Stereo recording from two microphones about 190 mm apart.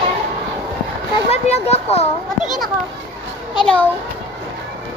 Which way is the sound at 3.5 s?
5° left (ahead or behind).